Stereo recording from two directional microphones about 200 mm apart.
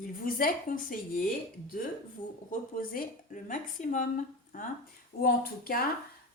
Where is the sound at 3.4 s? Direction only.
40° left (ahead or behind).